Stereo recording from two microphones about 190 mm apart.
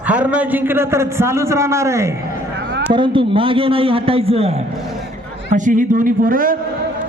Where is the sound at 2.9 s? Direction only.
25° right (ahead or behind).